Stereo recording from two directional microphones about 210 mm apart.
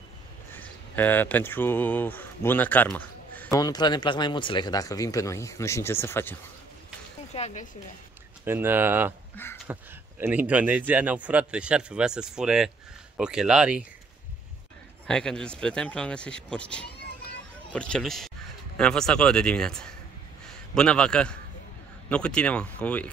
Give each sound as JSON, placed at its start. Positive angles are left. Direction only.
{"t": 0.6, "sound": "speech", "side_deg": 10}
{"t": 7.3, "sound": "speech", "side_deg": 30}
{"t": 8.5, "sound": "speech", "side_deg": -10}
{"t": 15.0, "sound": "speech", "side_deg": 5}